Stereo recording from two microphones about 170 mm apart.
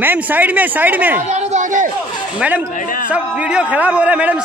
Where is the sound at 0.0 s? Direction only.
10° right (ahead or behind).